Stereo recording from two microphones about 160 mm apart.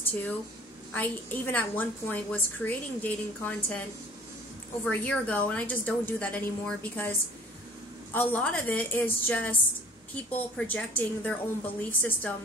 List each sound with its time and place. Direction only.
0.9 s a woman's voice: 10° left (ahead or behind)
4.8 s a woman's voice: 10° left (ahead or behind)